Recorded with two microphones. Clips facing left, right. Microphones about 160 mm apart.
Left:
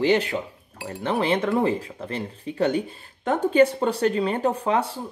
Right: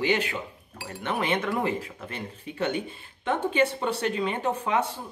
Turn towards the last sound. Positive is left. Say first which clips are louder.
# left 4 dB
turn(degrees=35)  # may be behind; listen again after turning